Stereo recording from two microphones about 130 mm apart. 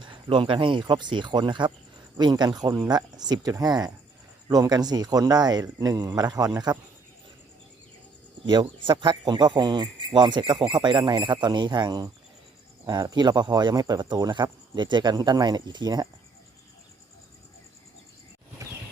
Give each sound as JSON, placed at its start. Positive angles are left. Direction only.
{"t": 0.0, "sound": "speech", "side_deg": -40}
{"t": 8.6, "sound": "speech", "side_deg": -40}